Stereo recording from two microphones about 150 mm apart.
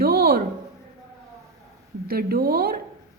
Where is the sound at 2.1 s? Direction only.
90° right.